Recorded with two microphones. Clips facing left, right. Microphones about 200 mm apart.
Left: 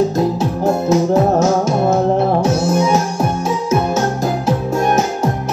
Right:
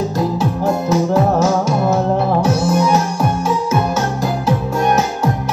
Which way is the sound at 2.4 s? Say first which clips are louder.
Even; 25° left (ahead or behind).